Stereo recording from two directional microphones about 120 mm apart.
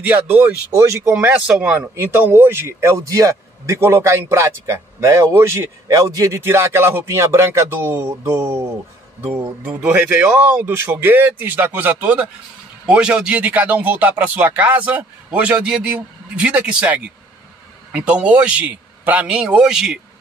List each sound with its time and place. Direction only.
0.0 s speech: 15° right (ahead or behind)
1.1 s speech: 10° right (ahead or behind)
9.7 s speech: 10° right (ahead or behind)